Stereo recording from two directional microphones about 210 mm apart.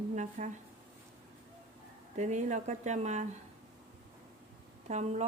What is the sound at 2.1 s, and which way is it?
Speech, 35° right (ahead or behind).